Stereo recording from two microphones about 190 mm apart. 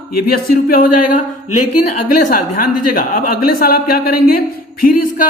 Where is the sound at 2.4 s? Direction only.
45° left (ahead or behind).